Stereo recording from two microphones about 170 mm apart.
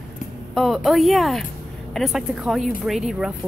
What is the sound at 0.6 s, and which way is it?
A woman's voice, centre (ahead or behind).